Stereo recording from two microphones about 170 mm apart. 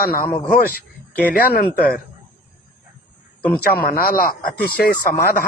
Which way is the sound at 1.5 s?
60° left (ahead or behind).